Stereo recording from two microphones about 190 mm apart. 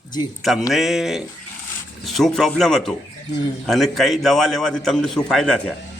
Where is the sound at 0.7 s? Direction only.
Centre (ahead or behind).